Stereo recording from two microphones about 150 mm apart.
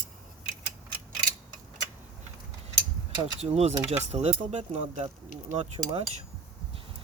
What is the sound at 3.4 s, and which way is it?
Speech, 45° right (ahead or behind).